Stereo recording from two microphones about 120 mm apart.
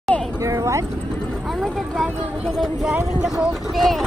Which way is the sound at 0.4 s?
25° right (ahead or behind).